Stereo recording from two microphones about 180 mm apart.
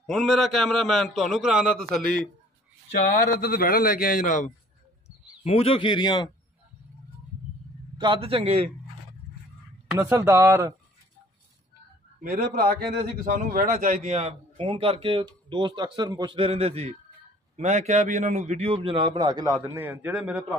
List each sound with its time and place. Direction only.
0.0 s a man's voice: centre (ahead or behind)
3.2 s a man's voice: 55° left (ahead or behind)
5.4 s speech: 30° left (ahead or behind)
8.0 s speech: 30° right (ahead or behind)
9.9 s speech: 15° right (ahead or behind)
12.2 s speech: 50° right (ahead or behind); by 19.5 s 25° right (ahead or behind)
19.7 s speech: 10° right (ahead or behind)